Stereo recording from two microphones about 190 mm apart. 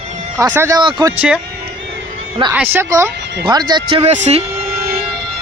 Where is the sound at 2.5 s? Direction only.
10° right (ahead or behind).